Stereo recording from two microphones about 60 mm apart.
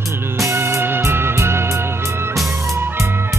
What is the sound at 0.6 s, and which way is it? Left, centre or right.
Music, right.